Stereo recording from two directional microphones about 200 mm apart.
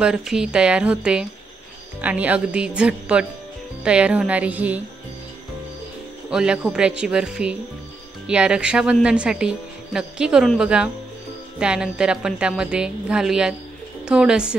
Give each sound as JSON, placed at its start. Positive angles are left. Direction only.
{"t": 0.0, "sound": "speech", "side_deg": 0}
{"t": 6.3, "sound": "speech", "side_deg": -5}